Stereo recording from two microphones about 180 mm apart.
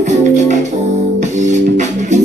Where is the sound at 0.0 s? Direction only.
40° right (ahead or behind).